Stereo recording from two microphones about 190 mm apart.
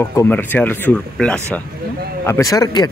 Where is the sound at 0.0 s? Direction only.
15° left (ahead or behind).